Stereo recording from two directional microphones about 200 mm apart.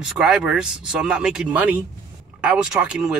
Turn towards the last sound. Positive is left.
turn(degrees=-5)  # may be behind; listen again after turning